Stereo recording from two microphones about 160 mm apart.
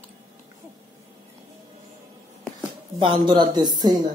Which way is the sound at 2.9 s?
30° right (ahead or behind).